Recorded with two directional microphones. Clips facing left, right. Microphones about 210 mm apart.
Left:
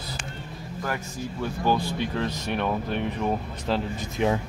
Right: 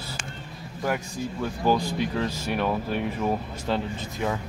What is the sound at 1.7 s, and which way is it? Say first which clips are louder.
Speech: right 2 dB; 10° right (ahead or behind).